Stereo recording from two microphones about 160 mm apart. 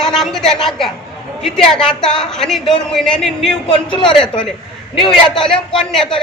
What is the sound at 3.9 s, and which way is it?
Speech, 30° left (ahead or behind).